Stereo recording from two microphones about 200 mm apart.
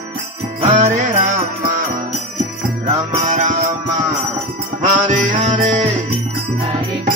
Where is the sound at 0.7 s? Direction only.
40° right (ahead or behind).